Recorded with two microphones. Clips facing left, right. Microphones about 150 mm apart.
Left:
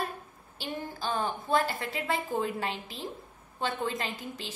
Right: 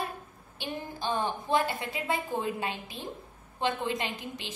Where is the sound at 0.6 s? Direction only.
15° right (ahead or behind).